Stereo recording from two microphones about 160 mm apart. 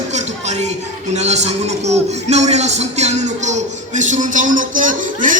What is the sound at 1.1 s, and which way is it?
A man's voice, 45° right (ahead or behind).